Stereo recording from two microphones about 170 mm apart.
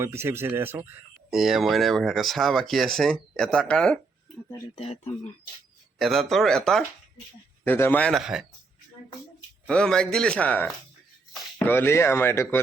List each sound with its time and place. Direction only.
0.0 s speech: 15° right (ahead or behind); by 4.0 s 5° left (ahead or behind)
4.8 s speech: 35° left (ahead or behind)
6.0 s speech: centre (ahead or behind)
9.6 s speech: 5° left (ahead or behind)